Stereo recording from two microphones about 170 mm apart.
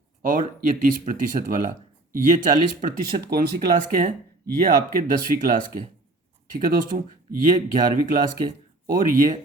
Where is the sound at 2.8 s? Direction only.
60° right (ahead or behind).